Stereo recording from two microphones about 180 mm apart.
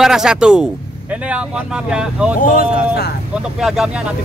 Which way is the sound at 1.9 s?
5° right (ahead or behind).